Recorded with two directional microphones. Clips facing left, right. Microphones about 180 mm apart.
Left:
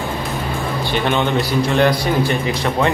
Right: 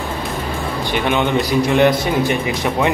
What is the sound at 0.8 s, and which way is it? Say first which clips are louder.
A man's voice: right 1 dB; 15° right (ahead or behind).